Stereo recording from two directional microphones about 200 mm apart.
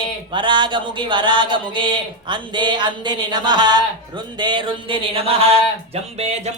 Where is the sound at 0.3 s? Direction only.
25° right (ahead or behind).